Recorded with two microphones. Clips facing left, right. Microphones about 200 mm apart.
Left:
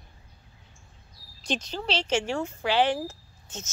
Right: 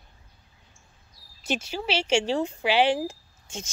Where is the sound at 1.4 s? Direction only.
10° right (ahead or behind).